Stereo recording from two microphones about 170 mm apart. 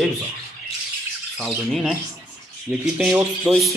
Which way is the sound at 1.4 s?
Centre (ahead or behind).